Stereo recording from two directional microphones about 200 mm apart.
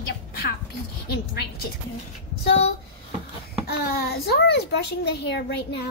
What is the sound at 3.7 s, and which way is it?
A child's voice, 55° left (ahead or behind).